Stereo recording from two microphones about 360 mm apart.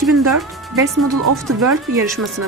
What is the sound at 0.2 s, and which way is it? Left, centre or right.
Speech, right.